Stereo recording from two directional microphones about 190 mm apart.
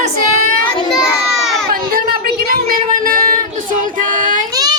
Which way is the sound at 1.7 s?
50° right (ahead or behind).